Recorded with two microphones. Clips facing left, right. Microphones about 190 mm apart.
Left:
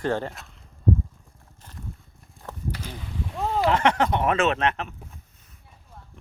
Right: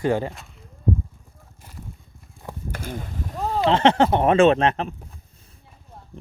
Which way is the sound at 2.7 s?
50° right (ahead or behind).